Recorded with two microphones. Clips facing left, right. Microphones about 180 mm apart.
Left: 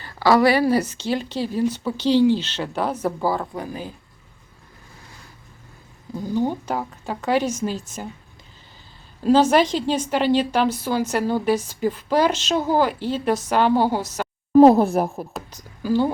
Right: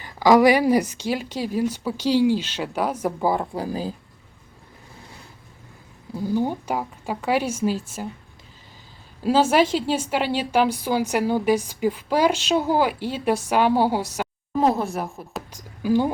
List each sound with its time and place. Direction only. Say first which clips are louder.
0.0 s a woman's voice: right 1 dB; 15° right (ahead or behind)
3.6 s speech: right 4 dB; 35° right (ahead or behind)
6.1 s a woman's voice: even; 10° right (ahead or behind)
9.2 s a woman's voice: left 2 dB; 10° right (ahead or behind)
14.9 s a woman's voice: left 7 dB; 35° left (ahead or behind)
15.3 s a woman's voice: even; 10° right (ahead or behind)